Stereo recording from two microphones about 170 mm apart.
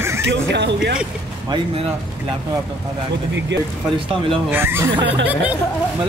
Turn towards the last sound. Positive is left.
turn(degrees=-15)  # may be behind; listen again after turning